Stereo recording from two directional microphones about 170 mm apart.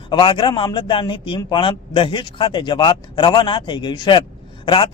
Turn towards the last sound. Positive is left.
turn(degrees=30)  # may be behind; listen again after turning